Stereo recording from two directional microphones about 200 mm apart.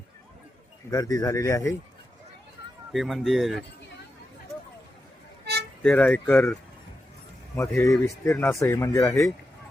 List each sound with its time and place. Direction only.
0.9 s speech: 20° left (ahead or behind)
2.9 s speech: centre (ahead or behind)
5.8 s speech: 5° left (ahead or behind)
7.7 s speech: 15° left (ahead or behind)